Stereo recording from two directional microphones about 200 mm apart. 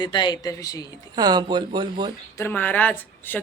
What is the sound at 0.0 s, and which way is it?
Speech, 20° left (ahead or behind).